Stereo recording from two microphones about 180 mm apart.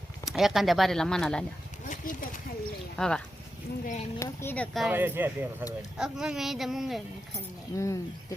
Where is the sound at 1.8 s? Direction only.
45° left (ahead or behind).